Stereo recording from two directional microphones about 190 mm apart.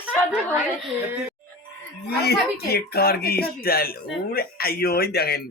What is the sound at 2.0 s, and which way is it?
Speech, 55° left (ahead or behind).